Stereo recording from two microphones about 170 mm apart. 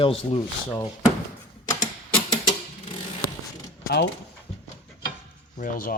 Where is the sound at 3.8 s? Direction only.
80° left.